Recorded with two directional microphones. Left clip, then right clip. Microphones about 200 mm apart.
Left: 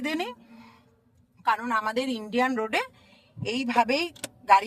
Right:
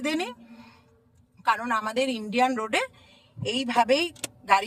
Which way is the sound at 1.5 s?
5° left (ahead or behind).